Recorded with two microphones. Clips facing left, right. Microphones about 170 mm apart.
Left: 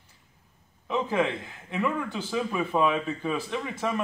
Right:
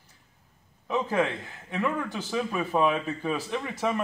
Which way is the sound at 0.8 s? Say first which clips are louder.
Even; centre (ahead or behind).